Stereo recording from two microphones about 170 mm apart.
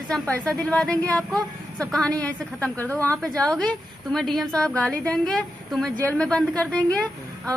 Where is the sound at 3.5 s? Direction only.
5° left (ahead or behind).